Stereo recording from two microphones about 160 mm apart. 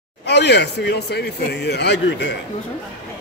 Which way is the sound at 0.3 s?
90° left.